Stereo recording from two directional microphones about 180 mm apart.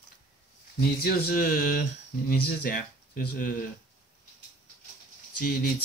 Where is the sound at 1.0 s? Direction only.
55° left (ahead or behind).